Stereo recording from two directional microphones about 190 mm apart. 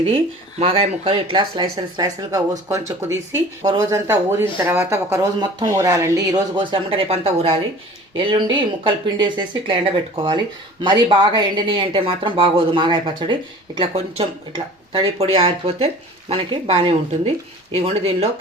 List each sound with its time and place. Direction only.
0.6 s speech: 30° right (ahead or behind)